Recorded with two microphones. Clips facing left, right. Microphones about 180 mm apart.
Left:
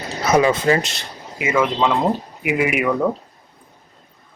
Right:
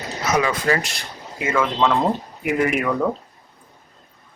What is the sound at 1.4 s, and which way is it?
Speech, 10° left (ahead or behind).